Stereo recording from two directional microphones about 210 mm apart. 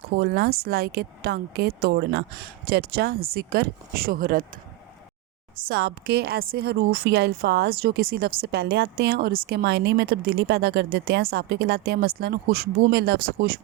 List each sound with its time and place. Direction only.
0.1 s a woman's voice: 50° right (ahead or behind)
5.6 s a woman's voice: 50° right (ahead or behind)